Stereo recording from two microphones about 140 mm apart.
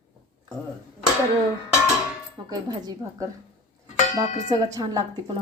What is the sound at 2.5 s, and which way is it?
Speech, 30° right (ahead or behind).